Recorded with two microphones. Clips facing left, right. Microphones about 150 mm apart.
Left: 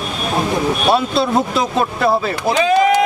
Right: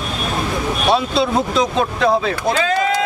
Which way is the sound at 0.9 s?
Centre (ahead or behind).